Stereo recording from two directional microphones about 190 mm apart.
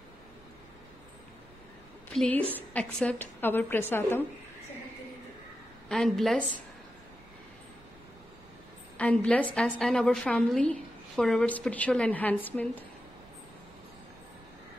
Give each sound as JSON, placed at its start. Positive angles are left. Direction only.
{"t": 2.0, "sound": "a woman's voice", "side_deg": 5}
{"t": 5.9, "sound": "a woman's voice", "side_deg": 0}
{"t": 8.9, "sound": "a woman's voice", "side_deg": 5}